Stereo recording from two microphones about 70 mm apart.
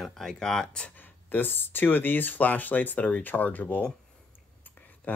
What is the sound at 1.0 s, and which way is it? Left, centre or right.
Speech, left.